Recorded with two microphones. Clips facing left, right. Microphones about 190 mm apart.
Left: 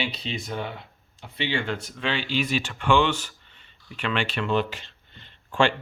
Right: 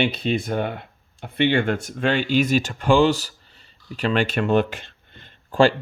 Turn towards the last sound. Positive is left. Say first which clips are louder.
# right 6 dB
turn(degrees=-40)  # may be behind; listen again after turning